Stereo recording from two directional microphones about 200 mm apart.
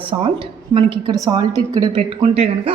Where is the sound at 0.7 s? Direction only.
20° right (ahead or behind).